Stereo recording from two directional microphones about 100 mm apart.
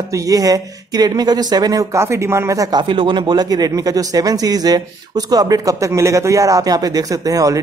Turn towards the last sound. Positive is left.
turn(degrees=-35)  # may be behind; listen again after turning